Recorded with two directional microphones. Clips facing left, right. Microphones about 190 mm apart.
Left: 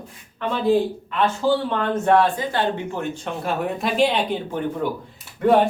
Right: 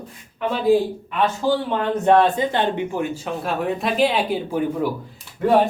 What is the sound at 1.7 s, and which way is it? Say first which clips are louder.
Speech: right 2 dB; 20° right (ahead or behind).